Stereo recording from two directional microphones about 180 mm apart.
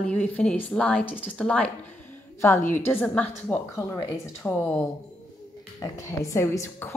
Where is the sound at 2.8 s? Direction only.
10° left (ahead or behind).